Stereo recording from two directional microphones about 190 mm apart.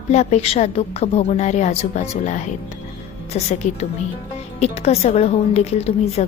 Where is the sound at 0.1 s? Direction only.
35° left (ahead or behind).